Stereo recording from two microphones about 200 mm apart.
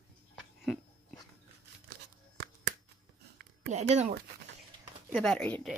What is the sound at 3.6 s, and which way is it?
Speech, 35° right (ahead or behind).